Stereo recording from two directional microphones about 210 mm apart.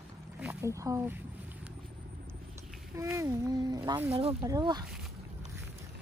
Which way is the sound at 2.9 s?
15° right (ahead or behind).